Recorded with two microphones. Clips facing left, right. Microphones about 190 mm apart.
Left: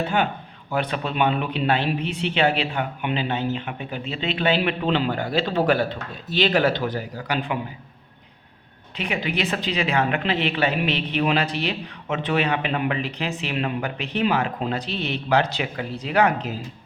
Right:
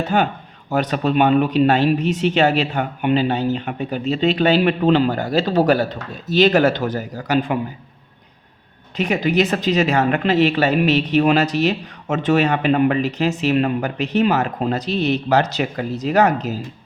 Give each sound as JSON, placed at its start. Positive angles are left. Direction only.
{"t": 0.0, "sound": "speech", "side_deg": -40}
{"t": 9.0, "sound": "speech", "side_deg": -40}